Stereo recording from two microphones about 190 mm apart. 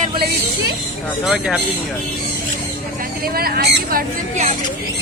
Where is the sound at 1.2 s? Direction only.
Centre (ahead or behind).